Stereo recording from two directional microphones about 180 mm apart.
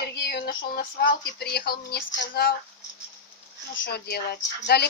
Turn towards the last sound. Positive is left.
turn(degrees=65)  # may be behind; listen again after turning